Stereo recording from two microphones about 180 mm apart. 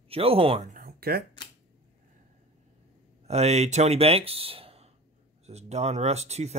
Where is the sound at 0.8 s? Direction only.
55° right (ahead or behind).